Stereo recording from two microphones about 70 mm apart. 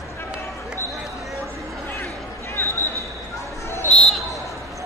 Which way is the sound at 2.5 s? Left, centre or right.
Left.